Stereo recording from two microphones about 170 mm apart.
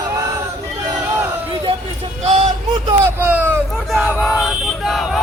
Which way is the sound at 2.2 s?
40° right (ahead or behind).